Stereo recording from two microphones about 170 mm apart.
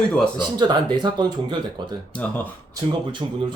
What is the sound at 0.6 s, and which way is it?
Speech, 25° right (ahead or behind).